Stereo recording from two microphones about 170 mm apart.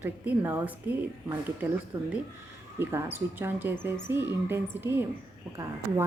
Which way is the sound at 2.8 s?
15° right (ahead or behind).